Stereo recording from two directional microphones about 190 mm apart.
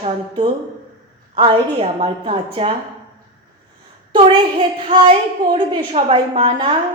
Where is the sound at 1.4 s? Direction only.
25° right (ahead or behind).